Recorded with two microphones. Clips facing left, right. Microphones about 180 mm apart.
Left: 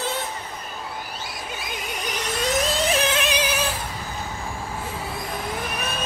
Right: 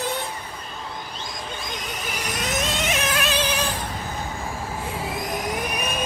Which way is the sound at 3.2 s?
15° left (ahead or behind).